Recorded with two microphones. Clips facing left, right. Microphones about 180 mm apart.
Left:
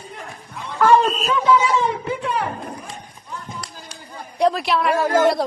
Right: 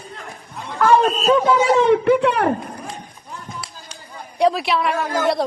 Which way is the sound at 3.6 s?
5° right (ahead or behind).